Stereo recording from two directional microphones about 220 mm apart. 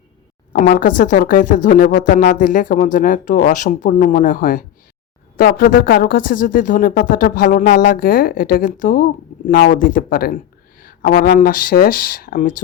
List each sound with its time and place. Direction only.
0.5 s speech: 40° left (ahead or behind)